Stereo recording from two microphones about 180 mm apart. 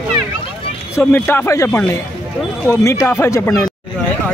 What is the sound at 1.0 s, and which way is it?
Speech, 10° left (ahead or behind).